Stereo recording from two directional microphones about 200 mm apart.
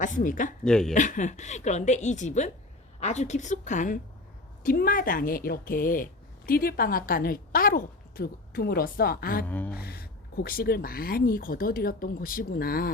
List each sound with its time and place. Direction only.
0.0 s a woman's voice: 40° left (ahead or behind)
0.6 s speech: 5° left (ahead or behind)
0.9 s a woman's voice: 40° left (ahead or behind)
9.5 s a sound: 10° left (ahead or behind)
9.7 s speech: 50° left (ahead or behind)